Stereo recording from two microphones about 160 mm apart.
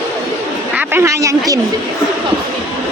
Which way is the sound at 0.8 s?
15° right (ahead or behind).